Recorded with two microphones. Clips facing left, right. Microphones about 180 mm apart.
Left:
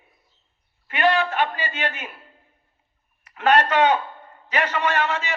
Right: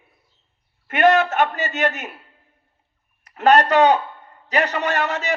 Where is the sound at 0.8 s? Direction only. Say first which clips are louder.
Right 5 dB; 50° right (ahead or behind).